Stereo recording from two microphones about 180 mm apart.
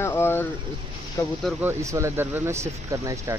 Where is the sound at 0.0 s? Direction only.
10° left (ahead or behind).